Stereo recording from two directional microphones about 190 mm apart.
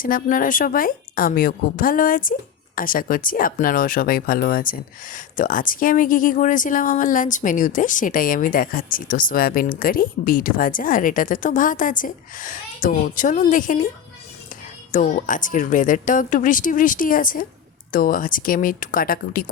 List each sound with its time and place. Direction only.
0.0 s speech: 45° left (ahead or behind)
14.9 s speech: 40° left (ahead or behind)